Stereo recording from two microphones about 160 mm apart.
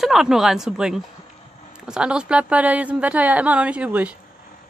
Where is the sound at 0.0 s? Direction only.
Centre (ahead or behind).